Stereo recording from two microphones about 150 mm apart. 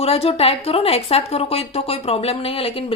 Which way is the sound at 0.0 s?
40° left (ahead or behind).